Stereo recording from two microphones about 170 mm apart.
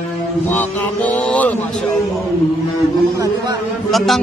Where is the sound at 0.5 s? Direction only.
10° left (ahead or behind).